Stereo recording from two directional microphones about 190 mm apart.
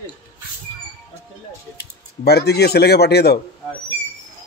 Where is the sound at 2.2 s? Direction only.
55° left (ahead or behind).